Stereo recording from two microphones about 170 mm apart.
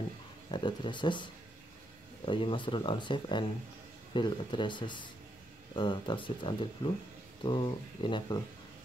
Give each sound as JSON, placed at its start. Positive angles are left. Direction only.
{"t": 0.5, "sound": "speech", "side_deg": 25}